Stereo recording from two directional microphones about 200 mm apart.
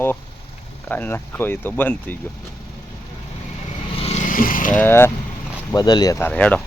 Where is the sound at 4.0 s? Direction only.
35° left (ahead or behind).